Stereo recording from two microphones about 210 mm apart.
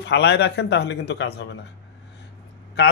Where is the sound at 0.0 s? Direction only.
55° left (ahead or behind).